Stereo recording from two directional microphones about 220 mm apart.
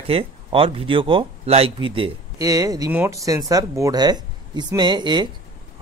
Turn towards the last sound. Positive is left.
turn(degrees=-20)  # may be behind; listen again after turning